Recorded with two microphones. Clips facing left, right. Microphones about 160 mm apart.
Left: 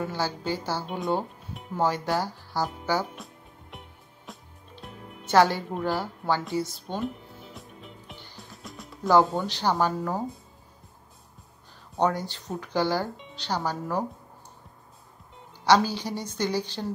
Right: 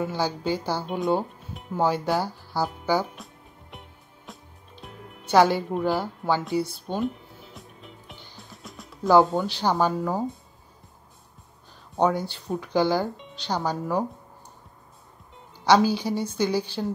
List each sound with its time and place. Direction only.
0.0 s speech: 15° right (ahead or behind)
0.8 s speech: centre (ahead or behind)
1.8 s speech: 15° right (ahead or behind)
3.7 s music: centre (ahead or behind)
5.3 s speech: 15° right (ahead or behind)
7.5 s music: centre (ahead or behind)
9.1 s speech: 15° right (ahead or behind)
12.0 s speech: 10° right (ahead or behind)
15.6 s speech: 15° right (ahead or behind)